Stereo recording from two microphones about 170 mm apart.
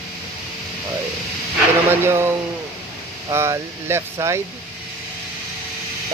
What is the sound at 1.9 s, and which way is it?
Speech, 15° right (ahead or behind).